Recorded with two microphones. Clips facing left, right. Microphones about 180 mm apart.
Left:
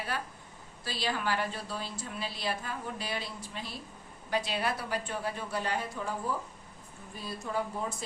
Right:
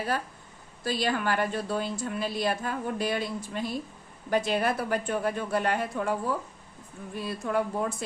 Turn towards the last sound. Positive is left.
turn(degrees=-60)  # may be behind; listen again after turning